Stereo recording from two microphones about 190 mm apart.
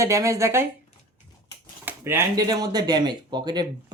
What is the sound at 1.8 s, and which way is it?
Speech, 10° right (ahead or behind).